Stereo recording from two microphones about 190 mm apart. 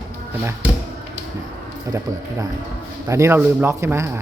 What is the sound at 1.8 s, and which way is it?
Speech, 15° right (ahead or behind).